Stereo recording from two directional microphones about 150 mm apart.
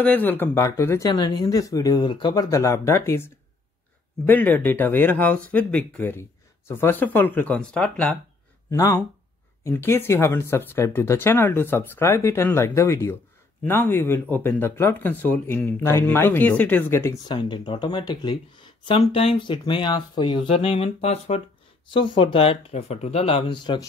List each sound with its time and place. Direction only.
0.0 s speech: 10° left (ahead or behind)
4.3 s speech: 10° left (ahead or behind)
8.6 s speech: 20° left (ahead or behind)
17.3 s speech: 30° left (ahead or behind)
21.8 s speech: 30° left (ahead or behind)